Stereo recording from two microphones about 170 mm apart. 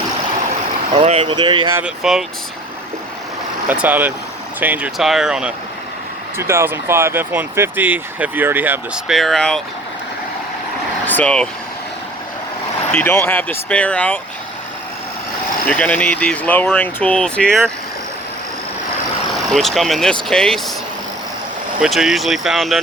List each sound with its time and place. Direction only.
1.0 s speech: 35° right (ahead or behind)
1.7 s speech: 5° right (ahead or behind)
3.7 s speech: 10° right (ahead or behind)
9.1 s speech: centre (ahead or behind)
11.0 s vehicle: 10° left (ahead or behind)
12.9 s speech: 10° left (ahead or behind)
15.6 s speech: 5° left (ahead or behind)
19.5 s speech: centre (ahead or behind)
21.8 s speech: centre (ahead or behind)